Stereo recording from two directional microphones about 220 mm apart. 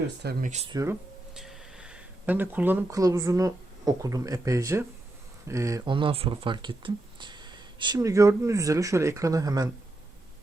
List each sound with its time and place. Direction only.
0.2 s speech: 45° right (ahead or behind)
0.5 s speech: 30° right (ahead or behind)
0.8 s speech: 5° right (ahead or behind)